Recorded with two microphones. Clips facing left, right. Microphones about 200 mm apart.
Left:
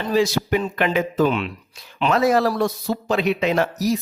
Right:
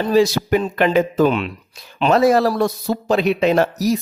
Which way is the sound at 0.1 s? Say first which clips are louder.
Right 3 dB; 35° right (ahead or behind).